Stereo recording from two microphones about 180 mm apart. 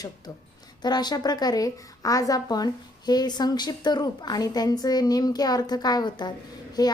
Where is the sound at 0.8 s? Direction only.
25° left (ahead or behind).